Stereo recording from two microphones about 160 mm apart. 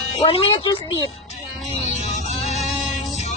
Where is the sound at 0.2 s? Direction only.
35° left (ahead or behind).